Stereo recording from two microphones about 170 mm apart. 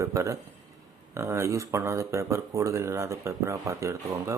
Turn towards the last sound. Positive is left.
turn(degrees=-15)  # may be behind; listen again after turning